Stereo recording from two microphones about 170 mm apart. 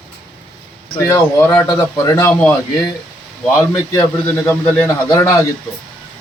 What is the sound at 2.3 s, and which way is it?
Speech, 5° left (ahead or behind).